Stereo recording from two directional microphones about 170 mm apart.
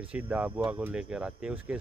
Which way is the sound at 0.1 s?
10° right (ahead or behind).